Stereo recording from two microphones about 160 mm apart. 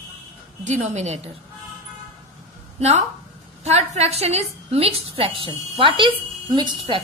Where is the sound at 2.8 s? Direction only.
45° right (ahead or behind).